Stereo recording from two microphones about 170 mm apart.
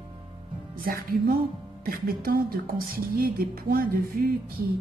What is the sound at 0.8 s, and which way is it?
Speech, 60° right (ahead or behind).